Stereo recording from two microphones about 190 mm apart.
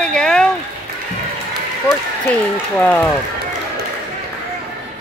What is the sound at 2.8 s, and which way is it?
Speech, 10° left (ahead or behind).